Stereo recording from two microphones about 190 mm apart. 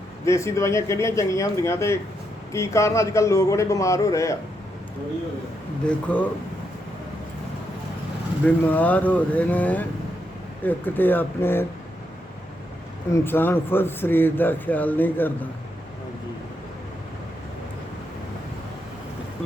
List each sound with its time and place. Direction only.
0.3 s speech: 15° left (ahead or behind)
5.8 s speech: 5° left (ahead or behind)
8.6 s speech: 10° left (ahead or behind)
13.1 s speech: 15° left (ahead or behind)